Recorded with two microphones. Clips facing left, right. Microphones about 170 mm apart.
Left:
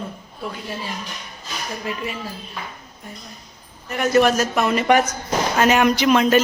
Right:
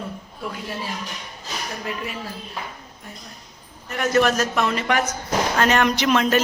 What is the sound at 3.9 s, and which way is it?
A man's voice, centre (ahead or behind).